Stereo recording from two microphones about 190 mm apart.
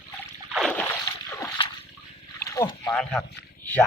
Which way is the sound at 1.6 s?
25° left (ahead or behind).